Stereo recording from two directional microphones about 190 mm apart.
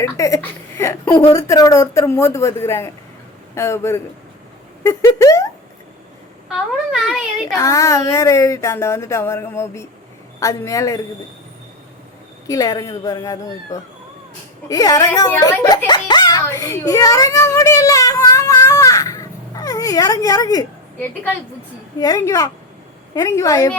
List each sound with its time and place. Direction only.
0.0 s speech: 15° left (ahead or behind)
7.4 s speech: 15° left (ahead or behind)
12.5 s a woman's voice: 20° left (ahead or behind)
14.7 s a child's voice: 20° left (ahead or behind)